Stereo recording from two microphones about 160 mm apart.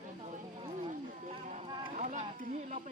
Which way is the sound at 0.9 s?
50° right (ahead or behind).